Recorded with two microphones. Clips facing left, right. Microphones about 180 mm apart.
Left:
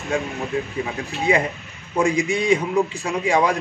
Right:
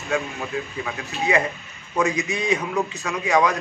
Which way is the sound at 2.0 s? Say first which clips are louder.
Left 3 dB; 30° left (ahead or behind).